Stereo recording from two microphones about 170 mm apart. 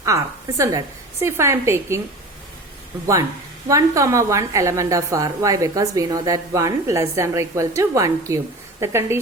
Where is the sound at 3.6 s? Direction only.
20° right (ahead or behind).